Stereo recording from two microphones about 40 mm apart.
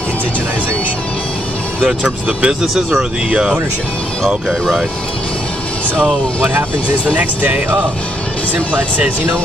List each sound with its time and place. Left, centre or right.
2.0 s speech: right
2.6 s speech: centre
3.0 s speech: right
4.5 s speech: centre
7.2 s speech: right